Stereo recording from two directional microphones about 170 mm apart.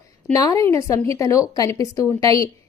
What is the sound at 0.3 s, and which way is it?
A woman's voice, 20° left (ahead or behind).